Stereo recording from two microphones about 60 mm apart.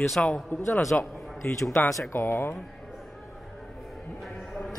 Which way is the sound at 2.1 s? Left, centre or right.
Left.